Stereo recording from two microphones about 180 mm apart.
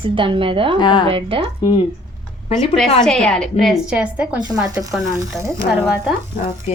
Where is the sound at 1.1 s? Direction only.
30° right (ahead or behind).